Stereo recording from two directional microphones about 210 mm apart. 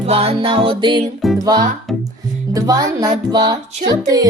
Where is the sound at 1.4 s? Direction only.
20° right (ahead or behind).